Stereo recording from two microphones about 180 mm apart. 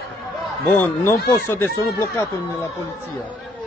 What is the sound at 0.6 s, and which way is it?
Speech, 10° left (ahead or behind).